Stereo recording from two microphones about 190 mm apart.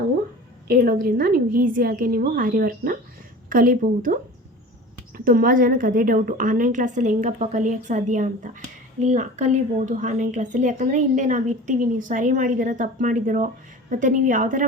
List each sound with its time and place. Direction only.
0.7 s a woman's voice: 50° right (ahead or behind)